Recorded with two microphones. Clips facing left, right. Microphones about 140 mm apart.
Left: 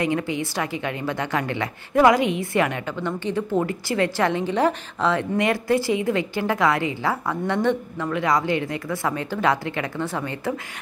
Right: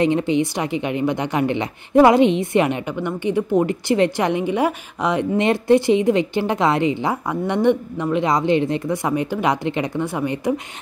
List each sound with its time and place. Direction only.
0.0 s a woman's voice: 25° right (ahead or behind)